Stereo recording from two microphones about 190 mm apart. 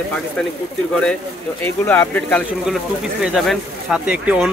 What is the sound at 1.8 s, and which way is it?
Speech, 10° left (ahead or behind).